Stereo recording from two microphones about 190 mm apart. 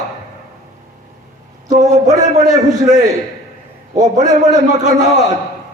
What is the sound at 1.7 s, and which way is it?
A man's voice, 40° right (ahead or behind).